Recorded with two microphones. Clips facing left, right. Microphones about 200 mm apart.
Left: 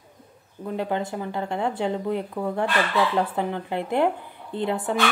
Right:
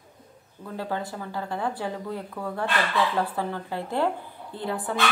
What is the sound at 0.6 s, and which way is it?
A woman's voice, 20° left (ahead or behind).